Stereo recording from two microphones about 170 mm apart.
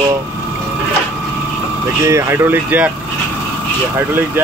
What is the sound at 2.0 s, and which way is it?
Speech, 15° right (ahead or behind).